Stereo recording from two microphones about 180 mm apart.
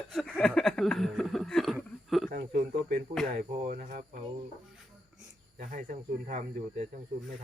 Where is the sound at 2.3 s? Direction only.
55° right (ahead or behind).